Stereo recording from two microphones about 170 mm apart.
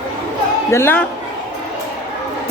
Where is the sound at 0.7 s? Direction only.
15° left (ahead or behind).